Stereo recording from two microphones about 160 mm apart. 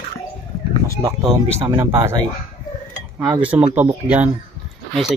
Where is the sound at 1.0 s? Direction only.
20° right (ahead or behind).